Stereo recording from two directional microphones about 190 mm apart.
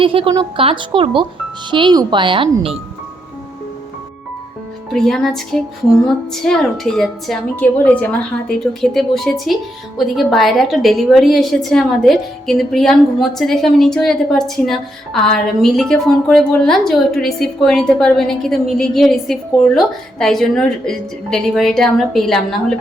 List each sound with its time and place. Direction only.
0.0 s speech: 30° right (ahead or behind)
4.9 s a woman's voice: centre (ahead or behind)